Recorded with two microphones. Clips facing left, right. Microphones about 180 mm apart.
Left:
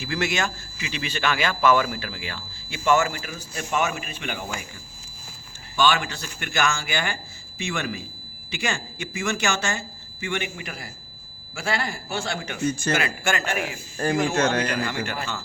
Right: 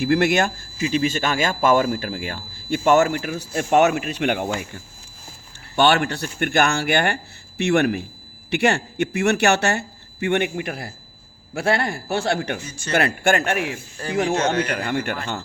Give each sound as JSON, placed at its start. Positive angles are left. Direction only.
{"t": 0.0, "sound": "speech", "side_deg": -55}
{"t": 5.7, "sound": "speech", "side_deg": -65}
{"t": 14.0, "sound": "speech", "side_deg": 50}
{"t": 14.7, "sound": "speech", "side_deg": -55}